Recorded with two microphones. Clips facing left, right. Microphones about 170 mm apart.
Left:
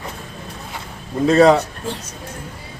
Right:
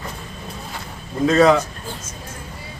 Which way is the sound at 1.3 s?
35° left (ahead or behind).